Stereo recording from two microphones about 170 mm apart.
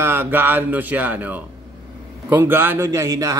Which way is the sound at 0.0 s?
15° right (ahead or behind).